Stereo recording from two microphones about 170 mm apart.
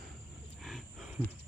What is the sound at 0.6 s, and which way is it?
Wild animals, centre (ahead or behind).